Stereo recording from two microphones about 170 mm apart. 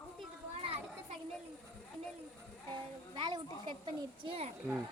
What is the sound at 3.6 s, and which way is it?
Speech, 30° right (ahead or behind).